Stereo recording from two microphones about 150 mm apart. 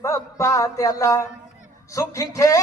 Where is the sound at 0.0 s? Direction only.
20° left (ahead or behind).